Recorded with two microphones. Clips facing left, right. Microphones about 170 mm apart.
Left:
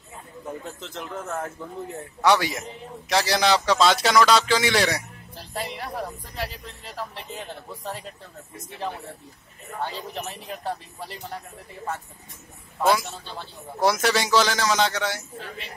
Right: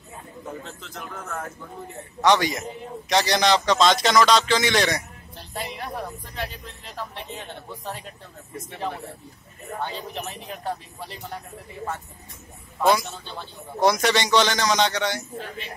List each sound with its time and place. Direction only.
0.7 s speech: 20° left (ahead or behind)
2.2 s a man's voice: 5° left (ahead or behind)
9.8 s a man's voice: centre (ahead or behind)
12.8 s a man's voice: centre (ahead or behind)